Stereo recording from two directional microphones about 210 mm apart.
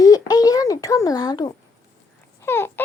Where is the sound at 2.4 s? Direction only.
10° left (ahead or behind).